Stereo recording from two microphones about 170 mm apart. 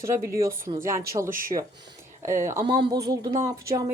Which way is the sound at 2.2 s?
15° right (ahead or behind).